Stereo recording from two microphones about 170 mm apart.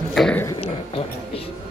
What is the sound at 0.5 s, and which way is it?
Speech, 35° left (ahead or behind).